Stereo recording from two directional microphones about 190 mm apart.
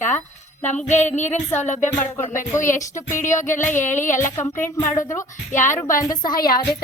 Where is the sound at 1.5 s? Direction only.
40° left (ahead or behind).